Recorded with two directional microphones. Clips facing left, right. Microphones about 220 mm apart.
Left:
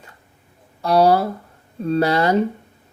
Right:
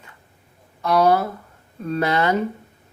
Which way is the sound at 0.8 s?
30° left (ahead or behind).